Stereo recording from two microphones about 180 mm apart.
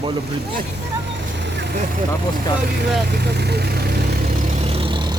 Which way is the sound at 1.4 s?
75° right (ahead or behind).